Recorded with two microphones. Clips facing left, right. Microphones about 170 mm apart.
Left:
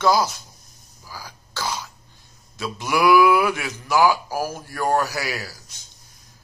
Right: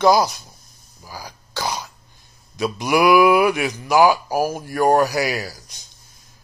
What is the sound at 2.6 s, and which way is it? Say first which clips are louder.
Speech: right 4 dB; 15° right (ahead or behind).